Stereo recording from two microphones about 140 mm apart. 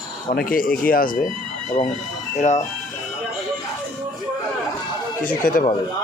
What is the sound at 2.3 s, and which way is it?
Speech, 60° left (ahead or behind).